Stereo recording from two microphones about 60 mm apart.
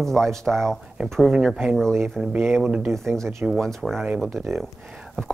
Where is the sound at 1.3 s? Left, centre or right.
Centre.